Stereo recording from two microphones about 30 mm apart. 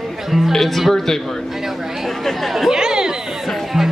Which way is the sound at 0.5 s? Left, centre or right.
Centre.